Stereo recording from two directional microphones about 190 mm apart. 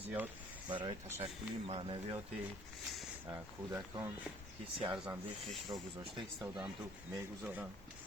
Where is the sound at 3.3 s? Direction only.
15° right (ahead or behind).